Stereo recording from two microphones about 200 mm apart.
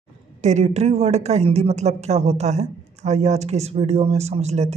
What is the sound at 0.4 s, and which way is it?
A woman's voice, 35° right (ahead or behind).